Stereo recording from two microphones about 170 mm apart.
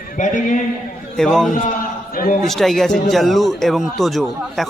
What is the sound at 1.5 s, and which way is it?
Chant, 55° left (ahead or behind).